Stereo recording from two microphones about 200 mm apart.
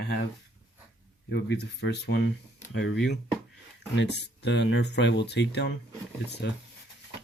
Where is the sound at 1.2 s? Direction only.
55° left (ahead or behind).